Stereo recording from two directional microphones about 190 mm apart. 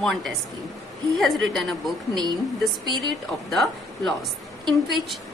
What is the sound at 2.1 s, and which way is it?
Speech, 20° right (ahead or behind).